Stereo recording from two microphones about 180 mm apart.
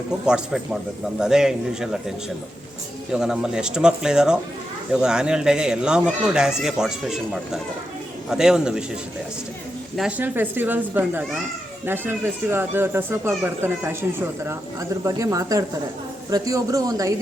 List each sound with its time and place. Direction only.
0.3 s speech: 5° right (ahead or behind)
9.9 s speech: 5° right (ahead or behind)